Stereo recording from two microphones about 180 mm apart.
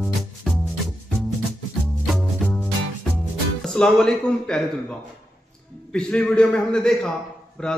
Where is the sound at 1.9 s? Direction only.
Centre (ahead or behind).